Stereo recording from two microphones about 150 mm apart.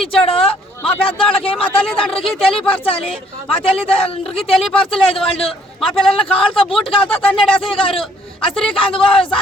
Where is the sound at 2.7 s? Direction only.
40° left (ahead or behind).